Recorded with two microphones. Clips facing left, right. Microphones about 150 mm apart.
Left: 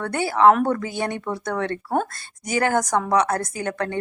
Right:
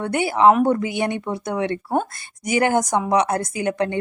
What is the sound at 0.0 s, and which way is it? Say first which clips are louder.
Speech: right 1 dB; 15° right (ahead or behind).